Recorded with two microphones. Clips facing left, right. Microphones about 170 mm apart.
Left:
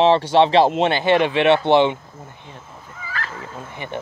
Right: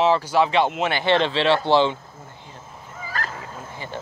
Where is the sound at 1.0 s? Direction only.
15° left (ahead or behind).